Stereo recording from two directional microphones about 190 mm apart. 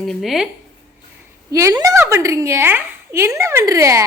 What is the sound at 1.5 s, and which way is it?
A woman's voice, 15° right (ahead or behind).